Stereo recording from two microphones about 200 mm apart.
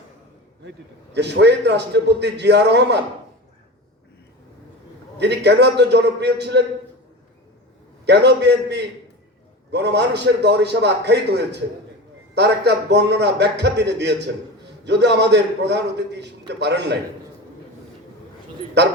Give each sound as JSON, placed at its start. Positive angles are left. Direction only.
{"t": 1.1, "sound": "a man's voice", "side_deg": -60}
{"t": 5.1, "sound": "a man's voice", "side_deg": -60}
{"t": 8.0, "sound": "a man's voice", "side_deg": -60}
{"t": 18.8, "sound": "a man's voice", "side_deg": -60}